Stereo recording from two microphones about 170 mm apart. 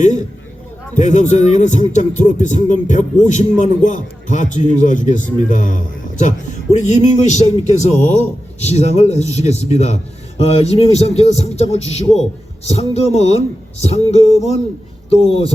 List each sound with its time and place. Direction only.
0.0 s a man's voice: 45° left (ahead or behind)